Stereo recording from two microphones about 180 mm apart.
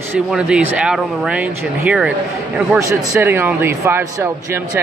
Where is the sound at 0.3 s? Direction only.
5° right (ahead or behind).